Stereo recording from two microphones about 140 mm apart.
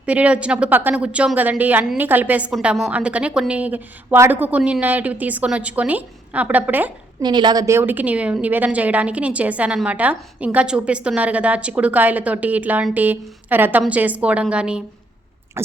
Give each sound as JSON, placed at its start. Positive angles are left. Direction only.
{"t": 0.0, "sound": "a woman's voice", "side_deg": -10}
{"t": 7.2, "sound": "a woman's voice", "side_deg": -30}
{"t": 15.6, "sound": "a sound", "side_deg": -20}